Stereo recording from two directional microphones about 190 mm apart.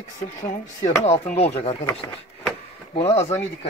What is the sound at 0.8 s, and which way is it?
Speech, 35° left (ahead or behind).